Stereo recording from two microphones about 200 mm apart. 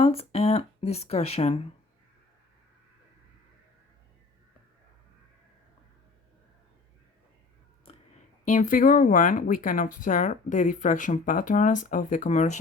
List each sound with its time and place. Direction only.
0.0 s speech: 30° left (ahead or behind)
8.4 s speech: 40° left (ahead or behind)